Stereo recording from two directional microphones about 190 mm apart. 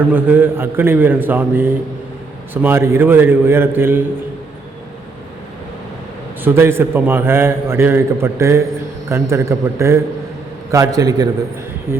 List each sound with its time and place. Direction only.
0.0 s a man's voice: 10° right (ahead or behind)
6.4 s a man's voice: 10° right (ahead or behind)